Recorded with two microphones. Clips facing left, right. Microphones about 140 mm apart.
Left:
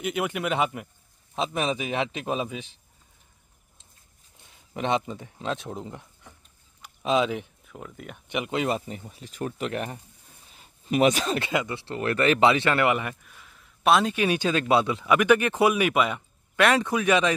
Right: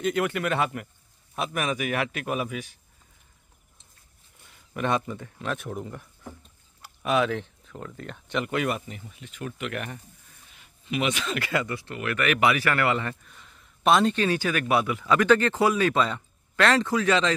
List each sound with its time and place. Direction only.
0.0 s speech: 15° left (ahead or behind)
4.7 s speech: 20° left (ahead or behind)
10.5 s a sound: 35° left (ahead or behind)
11.3 s speech: 20° left (ahead or behind)
11.8 s speech: 30° left (ahead or behind)
13.1 s a sound: 5° left (ahead or behind)
14.1 s speech: 15° left (ahead or behind)